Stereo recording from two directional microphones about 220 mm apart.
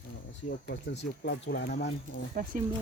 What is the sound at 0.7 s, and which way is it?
Speech, 50° left (ahead or behind).